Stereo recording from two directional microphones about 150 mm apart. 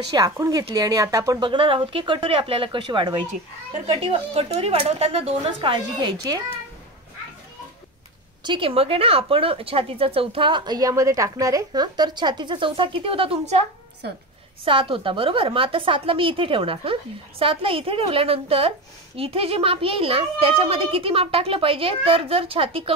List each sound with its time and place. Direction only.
0.1 s a woman's voice: 25° right (ahead or behind)
8.5 s a woman's voice: 35° right (ahead or behind)